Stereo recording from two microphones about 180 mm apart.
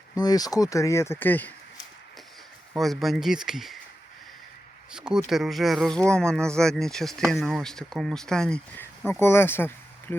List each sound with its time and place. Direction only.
0.2 s speech: 20° left (ahead or behind)
2.7 s speech: centre (ahead or behind)
4.9 s speech: 5° right (ahead or behind); by 10.2 s 10° left (ahead or behind)